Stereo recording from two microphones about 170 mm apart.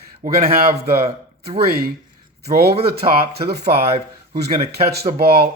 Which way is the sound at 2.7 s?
35° right (ahead or behind).